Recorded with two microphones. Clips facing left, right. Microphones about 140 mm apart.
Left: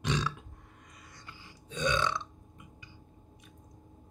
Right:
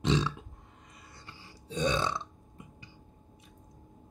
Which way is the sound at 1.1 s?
30° right (ahead or behind).